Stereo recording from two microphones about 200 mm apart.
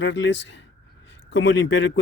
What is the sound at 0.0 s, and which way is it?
A man's voice, 65° left (ahead or behind).